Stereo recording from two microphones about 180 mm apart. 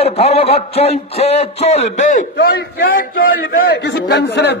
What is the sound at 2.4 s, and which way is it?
A man's voice, 60° left (ahead or behind).